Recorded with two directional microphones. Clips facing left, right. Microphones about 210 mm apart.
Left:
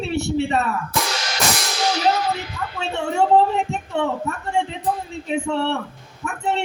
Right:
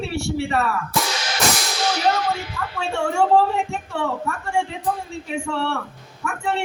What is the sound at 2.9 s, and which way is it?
A woman's voice, 20° left (ahead or behind).